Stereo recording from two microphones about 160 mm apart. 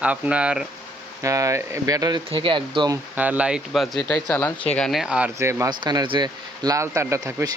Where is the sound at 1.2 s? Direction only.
20° right (ahead or behind).